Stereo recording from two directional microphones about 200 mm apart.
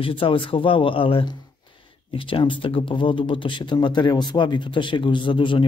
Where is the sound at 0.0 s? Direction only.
25° left (ahead or behind).